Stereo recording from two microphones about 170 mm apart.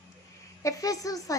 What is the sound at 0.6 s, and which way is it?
Speech, 20° left (ahead or behind).